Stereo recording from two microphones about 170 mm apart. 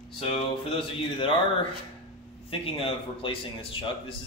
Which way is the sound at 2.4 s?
35° left (ahead or behind).